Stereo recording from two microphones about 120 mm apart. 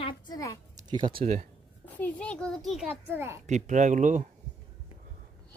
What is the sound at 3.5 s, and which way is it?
Speech, 90° right.